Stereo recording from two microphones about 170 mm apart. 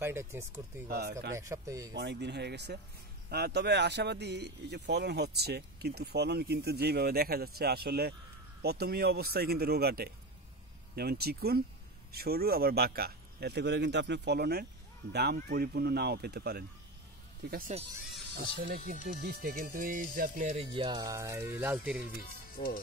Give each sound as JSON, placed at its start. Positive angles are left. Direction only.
{"t": 0.0, "sound": "speech", "side_deg": -15}
{"t": 0.8, "sound": "speech", "side_deg": -60}
{"t": 1.3, "sound": "speech", "side_deg": -20}
{"t": 2.0, "sound": "speech", "side_deg": -90}
{"t": 17.5, "sound": "speech", "side_deg": -55}
{"t": 19.2, "sound": "speech", "side_deg": -60}
{"t": 20.7, "sound": "speech", "side_deg": -25}
{"t": 22.2, "sound": "speech", "side_deg": 60}